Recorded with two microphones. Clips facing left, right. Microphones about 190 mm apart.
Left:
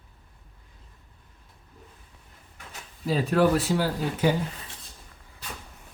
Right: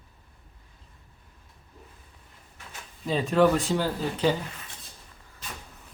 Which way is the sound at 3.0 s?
5° left (ahead or behind).